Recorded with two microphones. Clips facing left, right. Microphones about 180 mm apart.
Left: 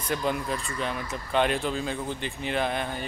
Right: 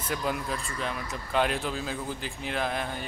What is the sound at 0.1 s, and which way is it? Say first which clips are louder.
Speech: left 3 dB; 5° right (ahead or behind).